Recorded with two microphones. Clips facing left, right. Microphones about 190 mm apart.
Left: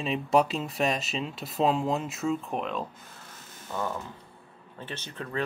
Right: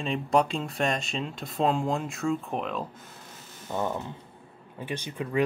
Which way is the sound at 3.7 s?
20° right (ahead or behind).